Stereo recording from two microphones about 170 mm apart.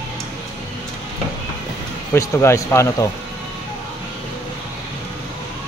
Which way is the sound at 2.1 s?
15° left (ahead or behind).